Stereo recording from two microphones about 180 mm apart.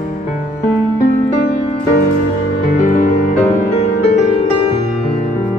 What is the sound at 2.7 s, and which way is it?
Music, 45° left (ahead or behind).